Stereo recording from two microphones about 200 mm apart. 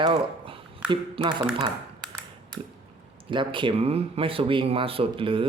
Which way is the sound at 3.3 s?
25° right (ahead or behind).